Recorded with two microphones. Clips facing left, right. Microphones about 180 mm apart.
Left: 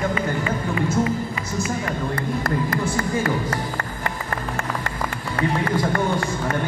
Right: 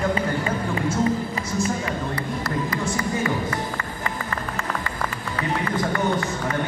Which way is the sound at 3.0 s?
50° left (ahead or behind).